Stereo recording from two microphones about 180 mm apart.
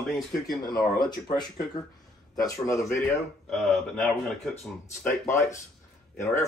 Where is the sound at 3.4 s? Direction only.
Centre (ahead or behind).